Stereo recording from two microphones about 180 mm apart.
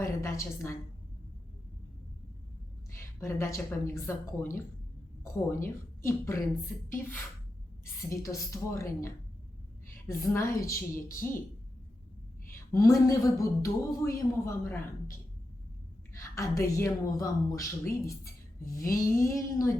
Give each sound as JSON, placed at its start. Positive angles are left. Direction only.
{"t": 0.0, "sound": "a sound", "side_deg": 15}
{"t": 3.0, "sound": "a woman's voice", "side_deg": 15}
{"t": 8.1, "sound": "a woman's voice", "side_deg": 15}
{"t": 12.9, "sound": "a woman's voice", "side_deg": 20}
{"t": 16.1, "sound": "a woman's voice", "side_deg": 15}